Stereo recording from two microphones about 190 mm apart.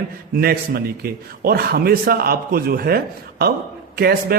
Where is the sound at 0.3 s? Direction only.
55° right (ahead or behind).